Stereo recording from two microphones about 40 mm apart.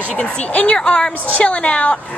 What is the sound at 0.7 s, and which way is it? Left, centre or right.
A woman's voice, centre.